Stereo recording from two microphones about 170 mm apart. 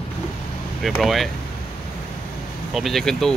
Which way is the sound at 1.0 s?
Centre (ahead or behind).